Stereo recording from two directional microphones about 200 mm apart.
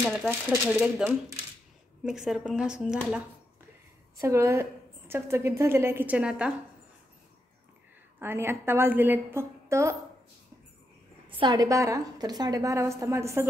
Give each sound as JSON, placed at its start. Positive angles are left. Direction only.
{"t": 0.3, "sound": "speech", "side_deg": -10}
{"t": 4.2, "sound": "a woman's voice", "side_deg": -15}
{"t": 8.2, "sound": "a woman's voice", "side_deg": -10}
{"t": 11.2, "sound": "a woman's voice", "side_deg": -25}